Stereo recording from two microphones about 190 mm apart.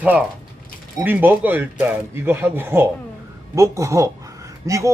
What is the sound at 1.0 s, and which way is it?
Speech, 10° right (ahead or behind).